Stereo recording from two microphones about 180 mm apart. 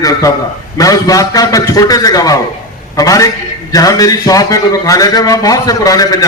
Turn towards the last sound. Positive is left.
turn(degrees=20)  # may be behind; listen again after turning